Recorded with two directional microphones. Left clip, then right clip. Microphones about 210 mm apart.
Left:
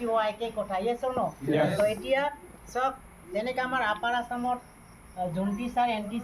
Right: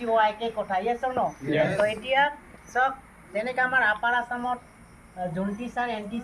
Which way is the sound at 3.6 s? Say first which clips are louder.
Right 8 dB; 20° left (ahead or behind).